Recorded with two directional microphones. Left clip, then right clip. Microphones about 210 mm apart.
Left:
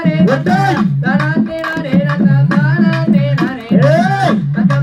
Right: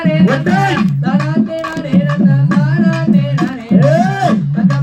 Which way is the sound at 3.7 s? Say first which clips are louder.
Left 1 dB; 25° left (ahead or behind).